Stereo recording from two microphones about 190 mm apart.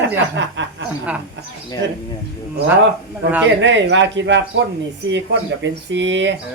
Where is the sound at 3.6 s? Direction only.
70° right (ahead or behind).